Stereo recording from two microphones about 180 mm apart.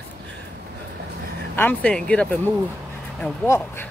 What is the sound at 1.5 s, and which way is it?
Speech, 10° left (ahead or behind).